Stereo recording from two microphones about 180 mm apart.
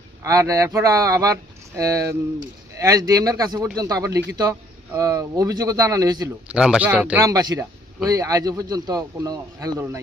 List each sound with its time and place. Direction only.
0.2 s a man's voice: 20° right (ahead or behind)
6.5 s speech: 5° right (ahead or behind)
7.3 s a man's voice: 20° right (ahead or behind)